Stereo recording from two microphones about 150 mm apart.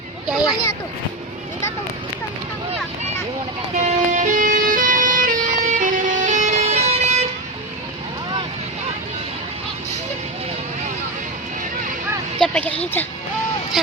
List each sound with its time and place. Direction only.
3.8 s vehicle: 50° right (ahead or behind)
12.4 s a sound: 10° left (ahead or behind)
13.8 s speech: centre (ahead or behind)